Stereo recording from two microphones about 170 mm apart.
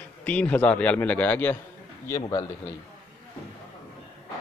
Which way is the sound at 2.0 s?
20° left (ahead or behind).